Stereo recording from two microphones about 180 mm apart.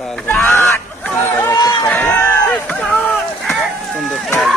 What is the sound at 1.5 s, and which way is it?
Run, 25° left (ahead or behind).